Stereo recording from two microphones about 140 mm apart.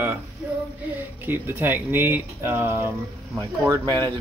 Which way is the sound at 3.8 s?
30° right (ahead or behind).